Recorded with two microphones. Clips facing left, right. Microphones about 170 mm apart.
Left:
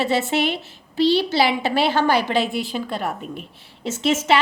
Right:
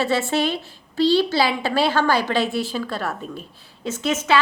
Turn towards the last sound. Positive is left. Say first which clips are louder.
# left 2 dB
turn(degrees=25)  # may be behind; listen again after turning